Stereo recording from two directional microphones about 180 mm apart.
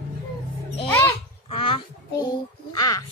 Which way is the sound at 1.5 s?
30° left (ahead or behind).